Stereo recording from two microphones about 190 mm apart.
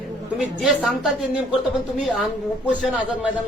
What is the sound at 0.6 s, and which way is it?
A woman's voice, centre (ahead or behind).